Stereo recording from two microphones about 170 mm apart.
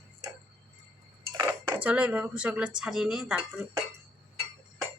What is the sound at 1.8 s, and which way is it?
Speech, 5° right (ahead or behind).